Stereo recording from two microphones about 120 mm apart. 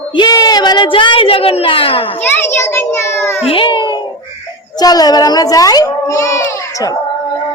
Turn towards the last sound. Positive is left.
turn(degrees=25)  # may be behind; listen again after turning